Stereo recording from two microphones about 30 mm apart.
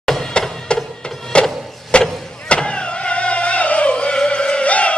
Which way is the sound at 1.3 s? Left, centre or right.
Left.